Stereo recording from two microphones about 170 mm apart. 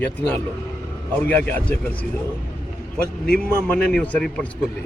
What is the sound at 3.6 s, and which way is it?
Speech, 10° left (ahead or behind).